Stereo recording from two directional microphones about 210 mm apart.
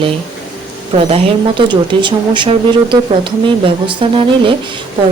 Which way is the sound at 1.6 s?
25° right (ahead or behind).